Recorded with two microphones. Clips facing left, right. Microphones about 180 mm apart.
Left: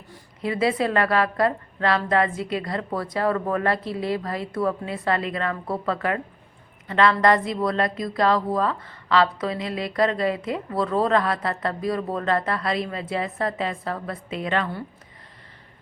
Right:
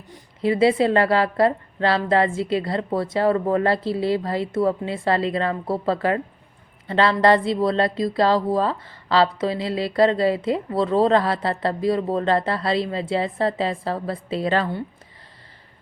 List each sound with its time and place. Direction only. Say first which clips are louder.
0.1 s speech: right 6 dB; 25° right (ahead or behind)